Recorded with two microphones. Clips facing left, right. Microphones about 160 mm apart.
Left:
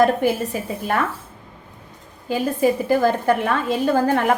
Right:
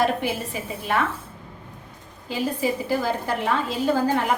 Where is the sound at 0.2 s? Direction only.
45° left (ahead or behind).